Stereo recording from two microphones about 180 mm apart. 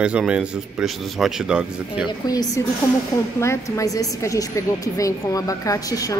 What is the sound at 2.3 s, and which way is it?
Speech, 20° left (ahead or behind).